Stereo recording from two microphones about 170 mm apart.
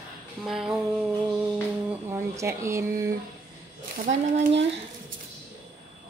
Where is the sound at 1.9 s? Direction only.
15° right (ahead or behind).